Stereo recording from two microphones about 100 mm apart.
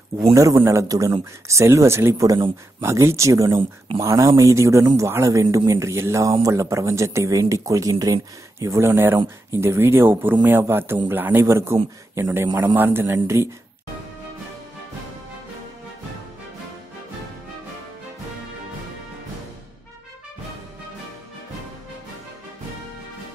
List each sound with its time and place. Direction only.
0.3 s a man's voice: 30° right (ahead or behind)